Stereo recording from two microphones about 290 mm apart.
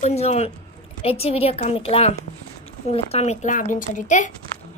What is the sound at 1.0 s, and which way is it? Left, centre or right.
A woman's voice, centre.